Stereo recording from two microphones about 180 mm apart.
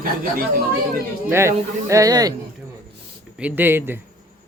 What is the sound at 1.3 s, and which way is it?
Speech, 15° right (ahead or behind).